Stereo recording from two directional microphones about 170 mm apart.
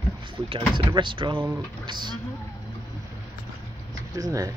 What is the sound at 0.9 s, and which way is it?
Speech, 30° right (ahead or behind).